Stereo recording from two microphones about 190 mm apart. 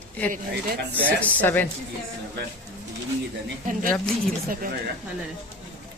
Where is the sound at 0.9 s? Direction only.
10° left (ahead or behind).